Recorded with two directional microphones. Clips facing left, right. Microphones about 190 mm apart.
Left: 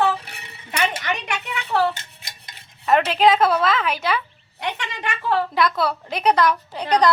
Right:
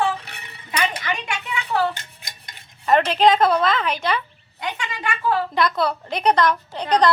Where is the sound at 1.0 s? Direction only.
40° left (ahead or behind).